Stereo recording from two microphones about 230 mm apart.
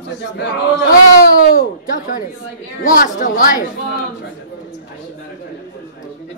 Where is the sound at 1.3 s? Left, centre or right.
Left.